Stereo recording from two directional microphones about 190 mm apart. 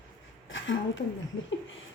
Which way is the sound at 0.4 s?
85° left.